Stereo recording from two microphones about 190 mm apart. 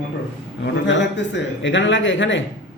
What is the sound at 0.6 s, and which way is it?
A man's voice, 70° left (ahead or behind).